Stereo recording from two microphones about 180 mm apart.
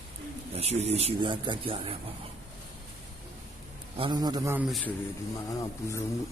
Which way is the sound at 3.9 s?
25° right (ahead or behind).